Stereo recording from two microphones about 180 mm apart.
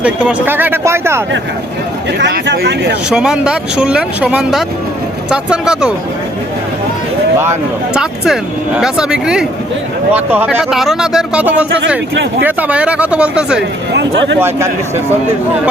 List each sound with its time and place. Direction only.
0.0 s speech: 5° right (ahead or behind)
2.1 s speech: 80° right
3.1 s speech: 5° right (ahead or behind)
7.9 s speech: centre (ahead or behind)
13.9 s speech: 75° right (ahead or behind)
14.4 s speech: 15° right (ahead or behind)